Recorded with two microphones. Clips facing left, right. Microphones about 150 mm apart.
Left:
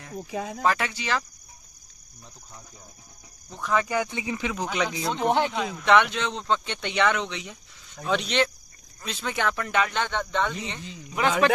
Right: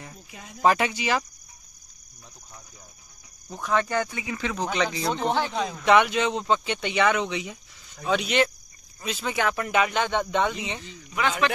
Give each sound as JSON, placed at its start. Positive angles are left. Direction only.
{"t": 0.6, "sound": "speech", "side_deg": -20}
{"t": 3.4, "sound": "speech", "side_deg": -5}
{"t": 4.1, "sound": "speech", "side_deg": 25}
{"t": 4.4, "sound": "speech", "side_deg": 10}
{"t": 11.1, "sound": "speech", "side_deg": 45}